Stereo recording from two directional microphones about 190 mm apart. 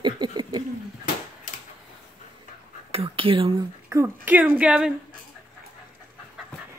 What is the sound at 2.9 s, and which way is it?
Whispering, 30° right (ahead or behind).